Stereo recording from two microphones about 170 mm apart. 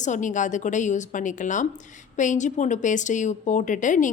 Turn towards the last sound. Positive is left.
turn(degrees=50)  # may be behind; listen again after turning